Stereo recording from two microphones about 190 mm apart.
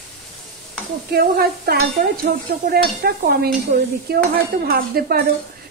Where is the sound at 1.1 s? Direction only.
55° right (ahead or behind).